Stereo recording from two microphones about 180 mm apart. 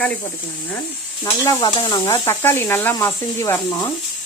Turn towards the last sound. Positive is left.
turn(degrees=10)  # may be behind; listen again after turning